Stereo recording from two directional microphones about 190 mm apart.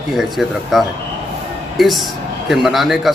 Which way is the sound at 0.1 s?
Centre (ahead or behind).